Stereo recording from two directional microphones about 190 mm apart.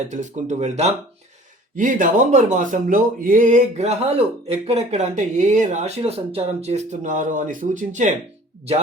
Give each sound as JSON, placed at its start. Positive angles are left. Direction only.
{"t": 0.1, "sound": "speech", "side_deg": -40}